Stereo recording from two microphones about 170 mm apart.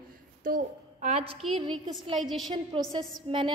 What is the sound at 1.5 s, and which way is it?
Speech, 30° right (ahead or behind).